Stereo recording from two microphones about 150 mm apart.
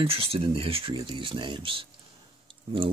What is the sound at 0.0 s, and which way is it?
Speech, 40° right (ahead or behind).